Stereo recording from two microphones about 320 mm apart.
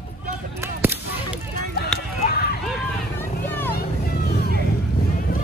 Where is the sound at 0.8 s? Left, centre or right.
Centre.